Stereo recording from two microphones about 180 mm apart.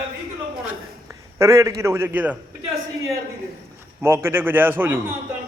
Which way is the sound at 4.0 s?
15° right (ahead or behind).